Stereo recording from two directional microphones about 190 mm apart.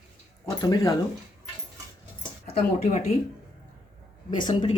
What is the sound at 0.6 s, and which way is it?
Speech, 20° left (ahead or behind).